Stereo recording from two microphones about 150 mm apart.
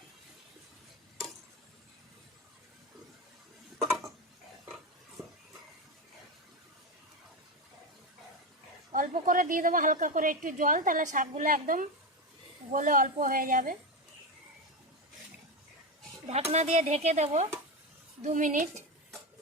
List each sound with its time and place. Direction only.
8.9 s a woman's voice: 65° right (ahead or behind)
16.3 s a woman's voice: 45° right (ahead or behind)